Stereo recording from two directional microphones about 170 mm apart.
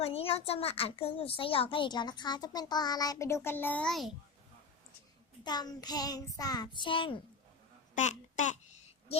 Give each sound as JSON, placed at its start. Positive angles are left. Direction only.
{"t": 0.0, "sound": "a woman's voice", "side_deg": 35}
{"t": 5.4, "sound": "a woman's voice", "side_deg": 25}
{"t": 7.9, "sound": "a child's voice", "side_deg": 45}